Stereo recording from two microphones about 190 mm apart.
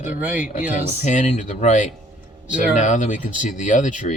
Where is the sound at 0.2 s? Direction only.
10° right (ahead or behind).